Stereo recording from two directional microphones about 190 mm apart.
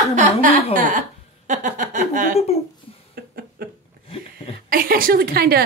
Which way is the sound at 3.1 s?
55° right (ahead or behind).